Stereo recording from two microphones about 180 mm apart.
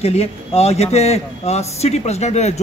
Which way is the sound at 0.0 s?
35° left (ahead or behind).